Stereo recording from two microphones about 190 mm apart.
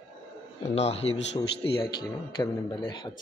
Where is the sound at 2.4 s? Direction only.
25° left (ahead or behind).